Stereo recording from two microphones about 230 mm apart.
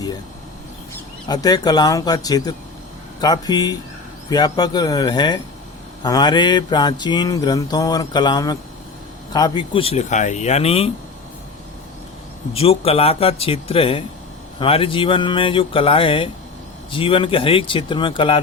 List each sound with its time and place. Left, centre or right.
0.9 s speech: centre
3.2 s mantra: centre
9.3 s speech: centre
12.5 s speech: left